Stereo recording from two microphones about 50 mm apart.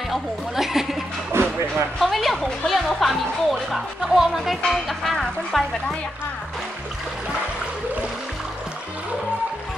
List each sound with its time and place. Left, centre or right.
0.1 s speech: centre
1.3 s music: right
2.0 s music: centre